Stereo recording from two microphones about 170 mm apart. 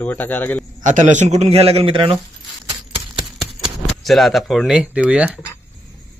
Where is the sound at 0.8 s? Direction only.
45° right (ahead or behind); by 2.2 s 30° right (ahead or behind).